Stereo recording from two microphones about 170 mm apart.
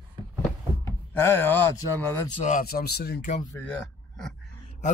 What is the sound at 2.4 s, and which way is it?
Speech, 45° left (ahead or behind).